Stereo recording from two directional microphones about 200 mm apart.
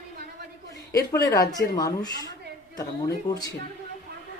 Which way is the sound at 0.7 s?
15° left (ahead or behind).